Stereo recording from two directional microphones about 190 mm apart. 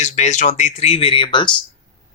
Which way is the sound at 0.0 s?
40° left (ahead or behind).